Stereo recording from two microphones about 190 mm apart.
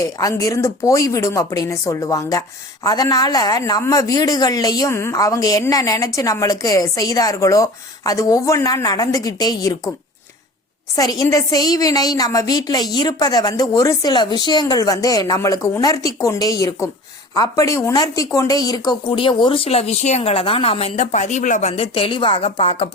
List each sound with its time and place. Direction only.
0.0 s speech: 20° left (ahead or behind)
10.9 s speech: 20° left (ahead or behind)